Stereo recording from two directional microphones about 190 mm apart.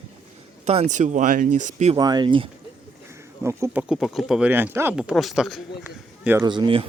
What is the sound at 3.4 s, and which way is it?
Speech, 15° right (ahead or behind).